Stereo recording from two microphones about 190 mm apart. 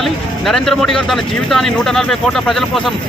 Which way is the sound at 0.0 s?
Centre (ahead or behind).